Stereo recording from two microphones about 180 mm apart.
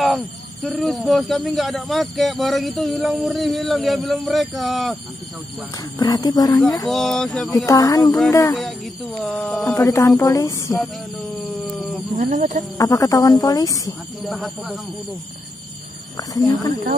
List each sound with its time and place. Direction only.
0.0 s speech: centre (ahead or behind)
5.9 s speech: 20° left (ahead or behind)
6.9 s speech: centre (ahead or behind)
7.6 s speech: 20° left (ahead or behind)
8.5 s speech: centre (ahead or behind)
12.2 s speech: 45° right (ahead or behind)
12.7 s speech: 20° left (ahead or behind)
14.2 s speech: centre (ahead or behind)
16.2 s speech: 20° left (ahead or behind)